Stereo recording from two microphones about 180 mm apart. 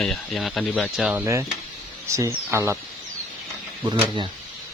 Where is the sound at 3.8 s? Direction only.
25° right (ahead or behind).